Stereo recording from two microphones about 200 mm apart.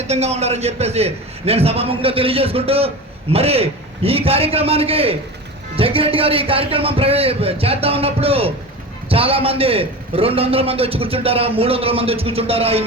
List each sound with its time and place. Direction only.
0.1 s a man's voice: 35° right (ahead or behind)